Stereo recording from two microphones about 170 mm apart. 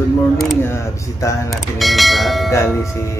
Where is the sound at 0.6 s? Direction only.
15° left (ahead or behind).